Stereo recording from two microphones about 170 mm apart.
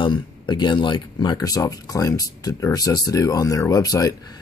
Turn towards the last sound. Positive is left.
turn(degrees=20)  # may be behind; listen again after turning